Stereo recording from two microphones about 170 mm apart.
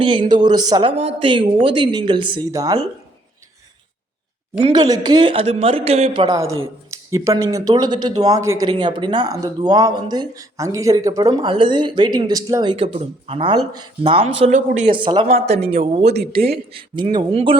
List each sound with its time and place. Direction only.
0.0 s speech: 30° right (ahead or behind)
4.5 s speech: 25° right (ahead or behind)
6.9 s speech: 20° right (ahead or behind)
12.7 s speech: 35° right (ahead or behind)
14.8 s speech: 30° right (ahead or behind)